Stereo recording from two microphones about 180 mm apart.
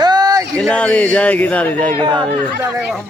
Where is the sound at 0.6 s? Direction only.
5° left (ahead or behind).